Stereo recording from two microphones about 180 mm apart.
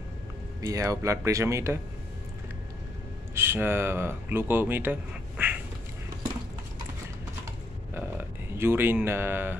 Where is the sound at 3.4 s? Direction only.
15° right (ahead or behind).